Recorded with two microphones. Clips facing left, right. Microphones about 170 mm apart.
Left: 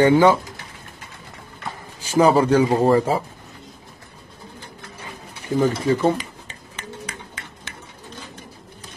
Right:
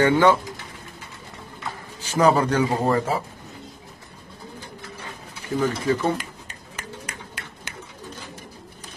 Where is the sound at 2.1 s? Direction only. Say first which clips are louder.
Left 4 dB; 30° left (ahead or behind).